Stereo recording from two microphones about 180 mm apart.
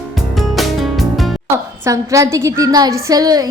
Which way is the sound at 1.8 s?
15° right (ahead or behind).